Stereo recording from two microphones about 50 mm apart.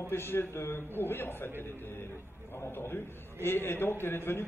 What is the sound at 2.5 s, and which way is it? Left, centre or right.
A man's voice, left.